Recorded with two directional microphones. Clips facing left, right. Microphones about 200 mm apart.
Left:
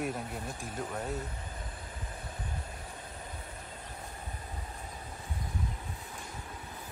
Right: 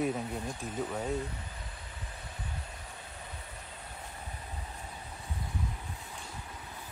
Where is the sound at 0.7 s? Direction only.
10° right (ahead or behind).